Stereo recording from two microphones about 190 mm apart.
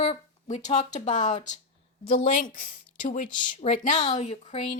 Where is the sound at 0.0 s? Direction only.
35° left (ahead or behind).